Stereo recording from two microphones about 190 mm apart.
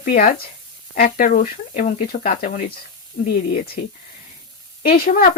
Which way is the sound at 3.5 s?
55° left (ahead or behind).